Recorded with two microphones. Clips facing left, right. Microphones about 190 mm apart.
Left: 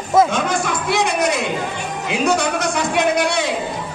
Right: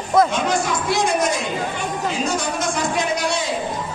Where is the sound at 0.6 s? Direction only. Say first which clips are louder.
Left 1 dB; 65° left (ahead or behind).